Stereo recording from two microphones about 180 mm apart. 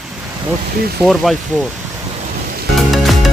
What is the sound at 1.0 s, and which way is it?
Speech, centre (ahead or behind).